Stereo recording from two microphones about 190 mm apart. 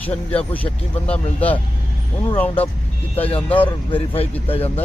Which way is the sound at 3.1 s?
30° left (ahead or behind).